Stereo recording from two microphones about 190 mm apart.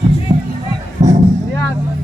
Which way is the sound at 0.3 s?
20° right (ahead or behind).